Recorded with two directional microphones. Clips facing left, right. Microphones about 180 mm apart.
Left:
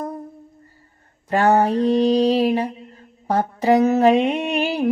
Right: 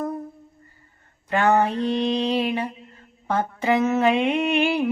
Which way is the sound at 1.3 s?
35° left (ahead or behind).